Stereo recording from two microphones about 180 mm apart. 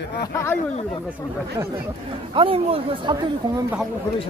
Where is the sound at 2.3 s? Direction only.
30° right (ahead or behind).